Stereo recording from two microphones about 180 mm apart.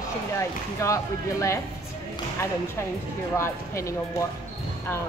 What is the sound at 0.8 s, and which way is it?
Speech, 15° left (ahead or behind).